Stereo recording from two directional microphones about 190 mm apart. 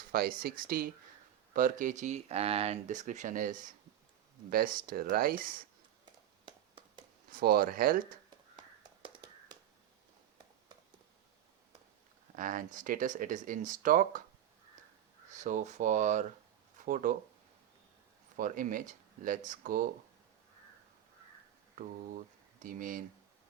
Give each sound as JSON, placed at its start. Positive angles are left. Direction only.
{"t": 0.1, "sound": "speech", "side_deg": -50}
{"t": 7.3, "sound": "speech", "side_deg": -50}
{"t": 8.5, "sound": "a sound", "side_deg": -25}
{"t": 12.4, "sound": "speech", "side_deg": -45}
{"t": 15.4, "sound": "speech", "side_deg": -40}
{"t": 18.3, "sound": "speech", "side_deg": -45}
{"t": 22.6, "sound": "speech", "side_deg": -45}